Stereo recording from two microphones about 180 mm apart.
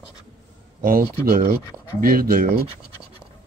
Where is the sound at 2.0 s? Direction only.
55° right (ahead or behind).